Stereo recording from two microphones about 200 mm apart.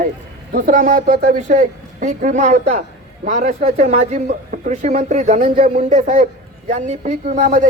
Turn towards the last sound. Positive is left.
turn(degrees=-40)  # may be behind; listen again after turning